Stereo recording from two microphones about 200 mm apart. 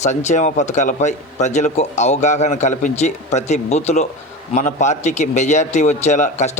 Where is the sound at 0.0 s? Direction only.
35° left (ahead or behind).